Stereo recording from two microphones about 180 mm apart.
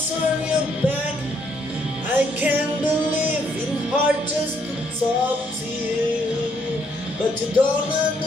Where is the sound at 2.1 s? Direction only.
10° right (ahead or behind).